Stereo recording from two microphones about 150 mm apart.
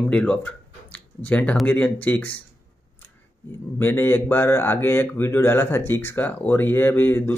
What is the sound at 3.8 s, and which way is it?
Speech, 15° left (ahead or behind).